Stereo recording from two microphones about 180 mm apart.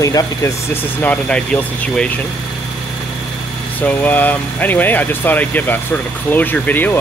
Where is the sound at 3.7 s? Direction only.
10° left (ahead or behind).